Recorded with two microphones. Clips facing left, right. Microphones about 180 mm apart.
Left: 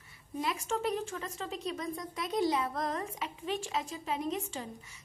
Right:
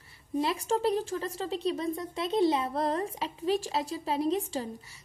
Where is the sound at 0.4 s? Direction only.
35° right (ahead or behind).